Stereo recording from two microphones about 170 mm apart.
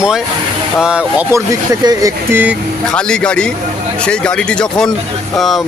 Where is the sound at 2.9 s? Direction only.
5° left (ahead or behind).